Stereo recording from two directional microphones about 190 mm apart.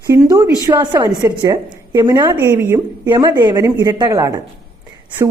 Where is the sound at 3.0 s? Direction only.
25° right (ahead or behind).